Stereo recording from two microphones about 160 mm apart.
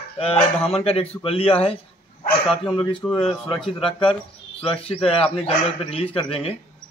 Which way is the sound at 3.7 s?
35° left (ahead or behind).